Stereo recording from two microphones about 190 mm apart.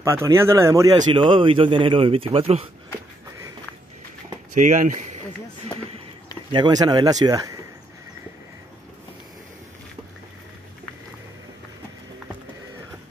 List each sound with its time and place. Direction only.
0.0 s speech: 15° right (ahead or behind); by 2.6 s 30° right (ahead or behind)
4.6 s speech: 40° right (ahead or behind)
6.5 s speech: 20° right (ahead or behind)